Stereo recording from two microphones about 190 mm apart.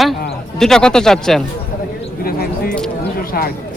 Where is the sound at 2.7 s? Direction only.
5° left (ahead or behind).